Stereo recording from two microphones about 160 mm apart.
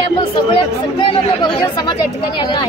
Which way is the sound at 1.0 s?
30° left (ahead or behind).